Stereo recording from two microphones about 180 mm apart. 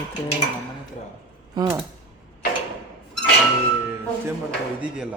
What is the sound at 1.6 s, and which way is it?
Speech, 20° right (ahead or behind).